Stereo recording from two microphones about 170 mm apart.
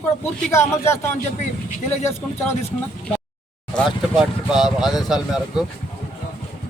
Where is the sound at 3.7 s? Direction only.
Centre (ahead or behind).